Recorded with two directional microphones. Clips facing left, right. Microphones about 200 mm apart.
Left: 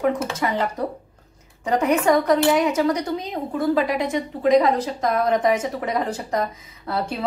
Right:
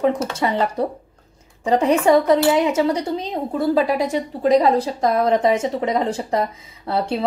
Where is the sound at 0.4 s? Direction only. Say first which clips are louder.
Right 3 dB; 25° right (ahead or behind).